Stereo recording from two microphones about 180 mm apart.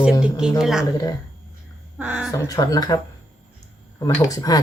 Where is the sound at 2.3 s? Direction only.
20° left (ahead or behind).